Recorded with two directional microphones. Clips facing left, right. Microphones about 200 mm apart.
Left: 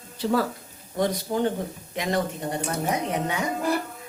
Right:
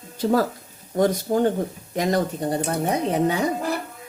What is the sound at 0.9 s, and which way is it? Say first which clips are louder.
Speech: right 5 dB; 45° right (ahead or behind).